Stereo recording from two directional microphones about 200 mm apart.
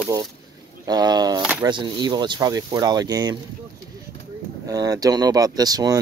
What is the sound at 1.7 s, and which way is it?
Speech, 20° right (ahead or behind).